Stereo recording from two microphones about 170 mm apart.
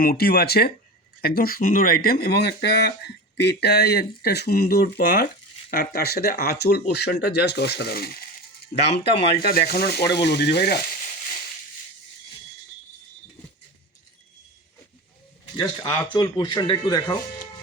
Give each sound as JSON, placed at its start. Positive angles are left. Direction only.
{"t": 0.0, "sound": "speech", "side_deg": 65}
{"t": 10.2, "sound": "speech", "side_deg": 80}
{"t": 15.5, "sound": "speech", "side_deg": 20}